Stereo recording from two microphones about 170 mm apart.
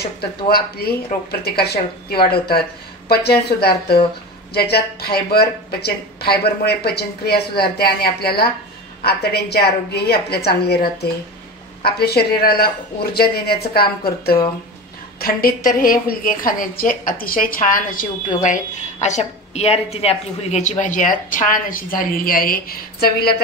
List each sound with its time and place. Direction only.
0.5 s a woman's voice: 65° left (ahead or behind)